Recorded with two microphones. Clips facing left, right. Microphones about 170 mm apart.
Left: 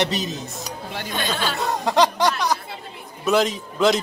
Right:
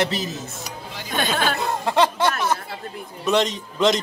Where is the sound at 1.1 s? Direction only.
50° right (ahead or behind).